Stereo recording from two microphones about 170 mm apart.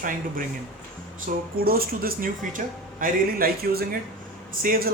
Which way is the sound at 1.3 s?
55° right (ahead or behind).